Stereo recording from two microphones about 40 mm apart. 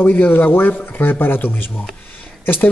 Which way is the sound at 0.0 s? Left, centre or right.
Left.